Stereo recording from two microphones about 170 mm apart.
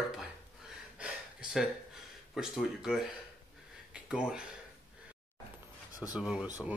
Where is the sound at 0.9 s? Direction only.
5° right (ahead or behind).